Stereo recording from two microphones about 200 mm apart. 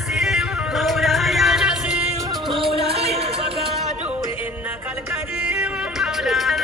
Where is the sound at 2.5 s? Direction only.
25° right (ahead or behind).